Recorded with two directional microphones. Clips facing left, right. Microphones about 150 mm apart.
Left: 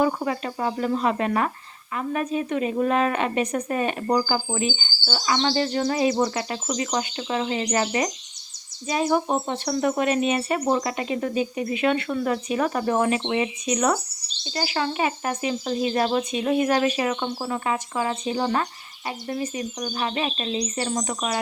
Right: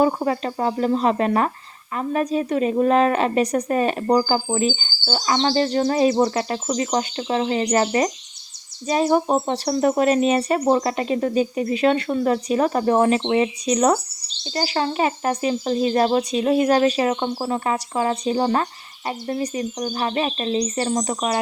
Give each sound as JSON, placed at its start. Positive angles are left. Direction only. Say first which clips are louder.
{"t": 0.0, "sound": "speech", "louder": "right 4 dB", "side_deg": -35}